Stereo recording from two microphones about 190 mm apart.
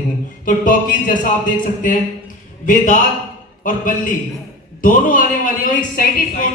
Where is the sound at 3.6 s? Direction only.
45° left (ahead or behind).